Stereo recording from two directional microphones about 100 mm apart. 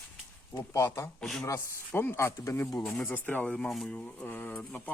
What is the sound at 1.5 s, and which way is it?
Speech, 20° left (ahead or behind).